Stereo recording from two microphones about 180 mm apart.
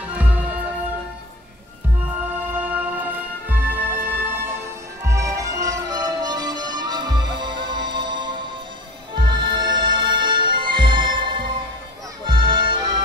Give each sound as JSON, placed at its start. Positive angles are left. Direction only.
{"t": 2.6, "sound": "music", "side_deg": -10}